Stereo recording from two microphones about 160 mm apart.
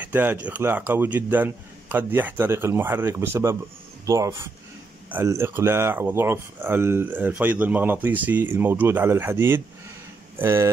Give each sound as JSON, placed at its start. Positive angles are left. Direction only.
{"t": 0.0, "sound": "speech", "side_deg": -10}